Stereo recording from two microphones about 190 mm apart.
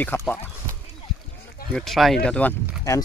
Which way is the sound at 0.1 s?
15° left (ahead or behind).